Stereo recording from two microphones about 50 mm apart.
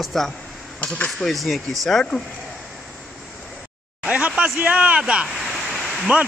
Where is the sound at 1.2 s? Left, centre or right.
Centre.